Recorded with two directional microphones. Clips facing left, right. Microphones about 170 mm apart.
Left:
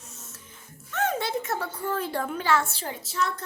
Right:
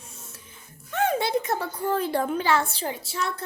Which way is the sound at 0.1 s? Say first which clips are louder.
Right 1 dB; 10° right (ahead or behind).